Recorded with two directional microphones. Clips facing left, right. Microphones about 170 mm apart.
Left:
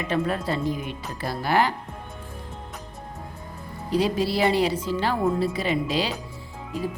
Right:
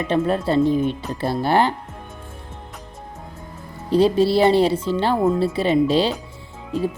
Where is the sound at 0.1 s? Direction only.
30° right (ahead or behind).